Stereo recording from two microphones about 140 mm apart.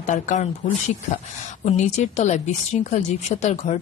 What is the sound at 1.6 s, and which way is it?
A woman's voice, 55° left (ahead or behind).